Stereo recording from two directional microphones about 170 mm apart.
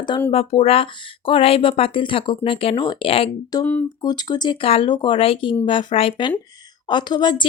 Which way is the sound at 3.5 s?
20° left (ahead or behind).